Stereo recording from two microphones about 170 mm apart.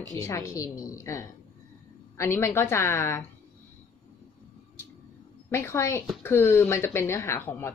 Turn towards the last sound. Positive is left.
turn(degrees=15)  # may be behind; listen again after turning